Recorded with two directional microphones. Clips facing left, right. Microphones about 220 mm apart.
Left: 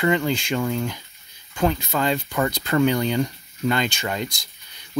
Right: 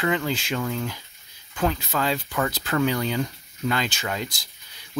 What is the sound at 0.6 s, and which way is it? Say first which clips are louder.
Speech: left 4 dB; 10° left (ahead or behind).